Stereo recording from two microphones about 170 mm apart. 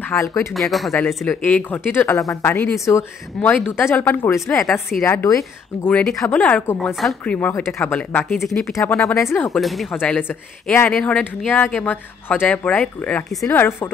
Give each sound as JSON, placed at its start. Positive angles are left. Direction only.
{"t": 0.1, "sound": "speech", "side_deg": 15}
{"t": 0.6, "sound": "speech", "side_deg": 0}
{"t": 7.3, "sound": "speech", "side_deg": 15}
{"t": 8.7, "sound": "speech", "side_deg": 15}
{"t": 9.4, "sound": "speech", "side_deg": 0}